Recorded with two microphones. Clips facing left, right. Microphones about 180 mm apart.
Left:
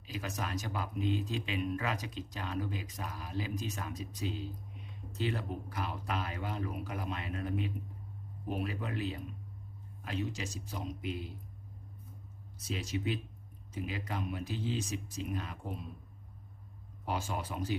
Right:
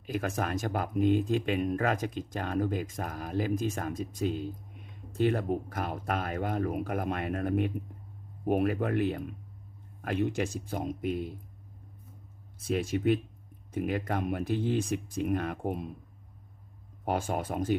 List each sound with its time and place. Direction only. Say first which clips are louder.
0.0 s speech: right 8 dB; 55° right (ahead or behind)
12.5 s speech: right 8 dB; 55° right (ahead or behind)
17.1 s speech: right 6 dB; 50° right (ahead or behind)